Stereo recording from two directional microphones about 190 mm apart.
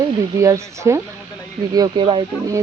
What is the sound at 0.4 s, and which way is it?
Speech, 15° right (ahead or behind).